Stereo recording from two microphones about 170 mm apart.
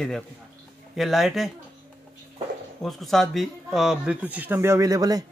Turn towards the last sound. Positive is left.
turn(degrees=-20)  # may be behind; listen again after turning